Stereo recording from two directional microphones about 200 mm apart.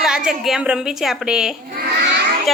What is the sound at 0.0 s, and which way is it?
A woman's voice, 5° right (ahead or behind).